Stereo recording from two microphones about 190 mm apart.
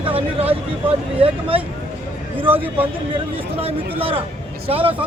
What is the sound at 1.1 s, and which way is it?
Speech, 30° right (ahead or behind).